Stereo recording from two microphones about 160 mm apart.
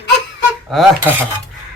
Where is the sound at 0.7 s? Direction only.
Centre (ahead or behind).